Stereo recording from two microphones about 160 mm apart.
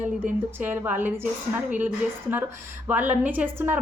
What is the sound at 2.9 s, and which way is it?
Speech, 10° right (ahead or behind).